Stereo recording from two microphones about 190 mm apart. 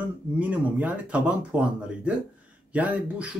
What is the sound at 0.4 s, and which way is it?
Speech, 10° right (ahead or behind).